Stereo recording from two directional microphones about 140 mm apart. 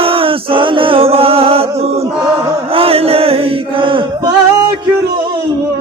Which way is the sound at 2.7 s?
45° right (ahead or behind).